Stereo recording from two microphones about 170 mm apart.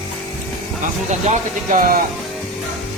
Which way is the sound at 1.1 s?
45° right (ahead or behind).